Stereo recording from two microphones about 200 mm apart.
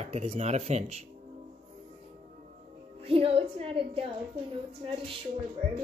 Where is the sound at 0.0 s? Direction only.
35° right (ahead or behind).